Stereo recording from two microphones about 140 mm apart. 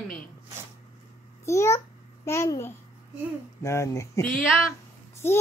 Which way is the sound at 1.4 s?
20° left (ahead or behind).